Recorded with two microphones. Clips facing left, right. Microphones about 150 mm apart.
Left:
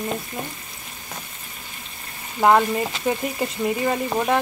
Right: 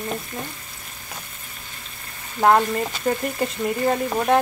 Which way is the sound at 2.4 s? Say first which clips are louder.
Even; 5° left (ahead or behind).